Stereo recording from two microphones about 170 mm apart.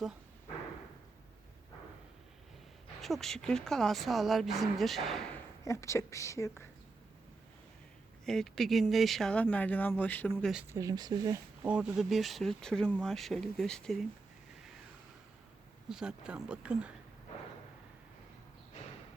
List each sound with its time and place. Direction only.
3.0 s speech: centre (ahead or behind)
5.6 s speech: 15° left (ahead or behind)
8.2 s speech: 5° left (ahead or behind)
10.5 s speech: 10° right (ahead or behind)
10.8 s speech: 20° right (ahead or behind)
11.6 s speech: 5° right (ahead or behind)
15.9 s speech: 5° right (ahead or behind)